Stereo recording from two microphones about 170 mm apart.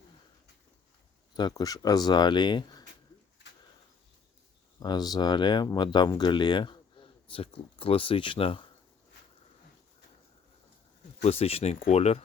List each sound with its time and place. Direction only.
1.4 s speech: 25° left (ahead or behind)
4.8 s speech: 25° left (ahead or behind)
11.2 s speech: 35° left (ahead or behind)